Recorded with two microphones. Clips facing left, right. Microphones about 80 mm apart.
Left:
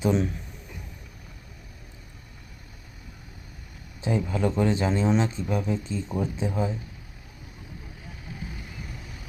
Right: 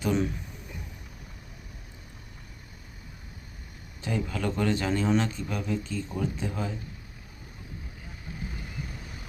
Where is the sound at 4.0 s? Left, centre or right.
Left.